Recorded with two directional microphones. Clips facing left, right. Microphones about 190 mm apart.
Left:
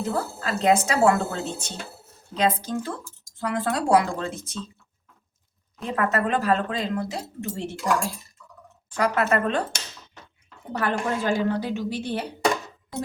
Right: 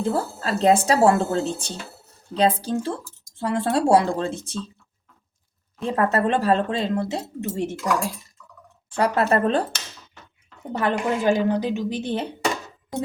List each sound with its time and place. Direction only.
0.0 s speech: 30° right (ahead or behind)
5.8 s speech: 30° right (ahead or behind)
8.9 s speech: 30° right (ahead or behind)
10.7 s speech: 20° right (ahead or behind)